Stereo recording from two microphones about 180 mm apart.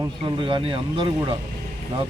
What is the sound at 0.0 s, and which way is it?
A man's voice, 25° right (ahead or behind).